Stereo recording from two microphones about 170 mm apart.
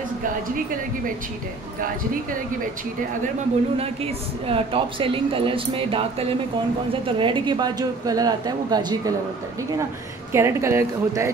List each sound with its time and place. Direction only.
3.7 s a woman's voice: 35° right (ahead or behind)
10.3 s speech: 15° right (ahead or behind)